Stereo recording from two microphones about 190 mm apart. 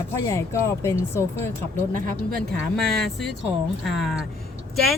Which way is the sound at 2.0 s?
45° right (ahead or behind).